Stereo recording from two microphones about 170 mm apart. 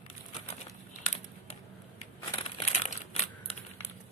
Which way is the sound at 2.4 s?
40° left (ahead or behind).